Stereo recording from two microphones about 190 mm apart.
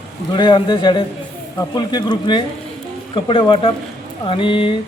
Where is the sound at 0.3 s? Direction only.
25° left (ahead or behind).